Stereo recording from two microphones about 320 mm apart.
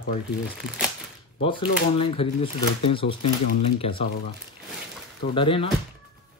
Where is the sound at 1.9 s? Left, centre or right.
Centre.